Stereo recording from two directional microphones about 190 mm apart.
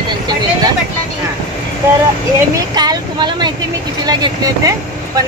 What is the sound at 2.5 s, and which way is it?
Speech, 20° right (ahead or behind).